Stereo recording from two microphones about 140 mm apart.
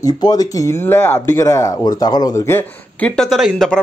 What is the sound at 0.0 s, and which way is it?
Speech, 25° left (ahead or behind).